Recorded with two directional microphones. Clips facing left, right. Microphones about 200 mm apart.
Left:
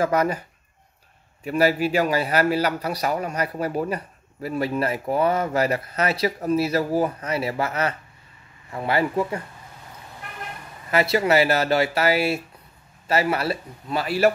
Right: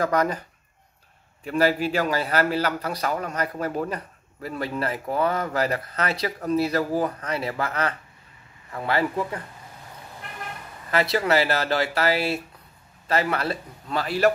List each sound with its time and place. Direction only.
0.0 s a man's voice: 10° left (ahead or behind)
1.4 s a man's voice: 10° left (ahead or behind)
5.3 s speech: 25° left (ahead or behind)
5.6 s a man's voice: 10° left (ahead or behind)
10.9 s a man's voice: 10° left (ahead or behind)